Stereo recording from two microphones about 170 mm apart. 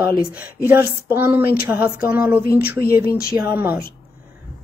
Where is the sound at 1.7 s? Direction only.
10° right (ahead or behind).